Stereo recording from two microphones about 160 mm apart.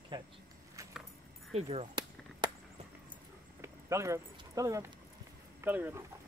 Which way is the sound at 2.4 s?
30° right (ahead or behind).